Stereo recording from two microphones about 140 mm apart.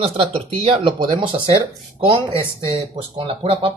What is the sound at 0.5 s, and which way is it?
Speech, 45° right (ahead or behind).